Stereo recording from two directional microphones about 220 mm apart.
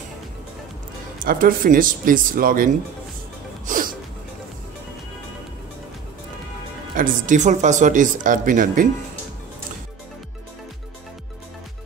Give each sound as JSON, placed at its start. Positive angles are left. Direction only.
{"t": 1.2, "sound": "speech", "side_deg": -40}
{"t": 3.6, "sound": "music", "side_deg": -40}
{"t": 7.0, "sound": "speech", "side_deg": -35}